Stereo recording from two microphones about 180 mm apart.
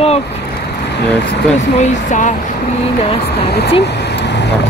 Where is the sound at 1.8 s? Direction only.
45° left (ahead or behind).